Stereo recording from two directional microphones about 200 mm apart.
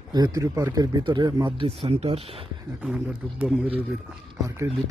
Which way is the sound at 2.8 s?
5° right (ahead or behind).